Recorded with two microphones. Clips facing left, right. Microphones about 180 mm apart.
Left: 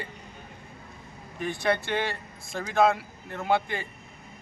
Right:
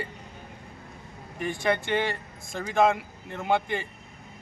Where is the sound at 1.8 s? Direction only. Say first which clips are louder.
Right 2 dB; 5° left (ahead or behind).